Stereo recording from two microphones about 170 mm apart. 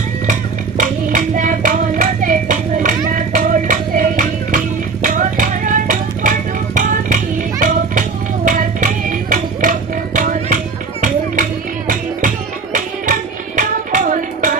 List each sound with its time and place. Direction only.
0.3 s a sound: 50° right (ahead or behind)
3.1 s music: 50° right (ahead or behind)
12.7 s music: 50° right (ahead or behind)